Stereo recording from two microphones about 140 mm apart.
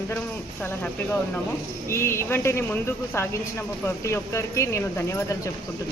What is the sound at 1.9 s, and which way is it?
A man's voice, 20° left (ahead or behind).